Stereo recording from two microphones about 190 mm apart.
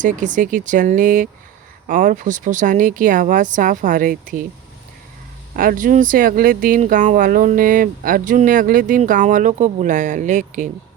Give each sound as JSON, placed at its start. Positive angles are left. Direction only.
{"t": 0.0, "sound": "speech", "side_deg": -40}
{"t": 5.5, "sound": "speech", "side_deg": -45}